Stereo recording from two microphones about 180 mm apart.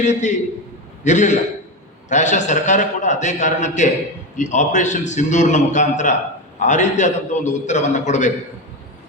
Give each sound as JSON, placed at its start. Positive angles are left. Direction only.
{"t": 0.0, "sound": "a man's voice", "side_deg": 40}